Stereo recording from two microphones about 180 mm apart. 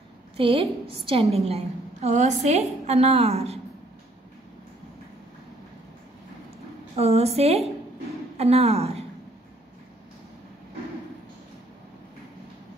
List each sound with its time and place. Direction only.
0.4 s a woman's voice: 30° right (ahead or behind)
7.0 s a woman's voice: 35° right (ahead or behind)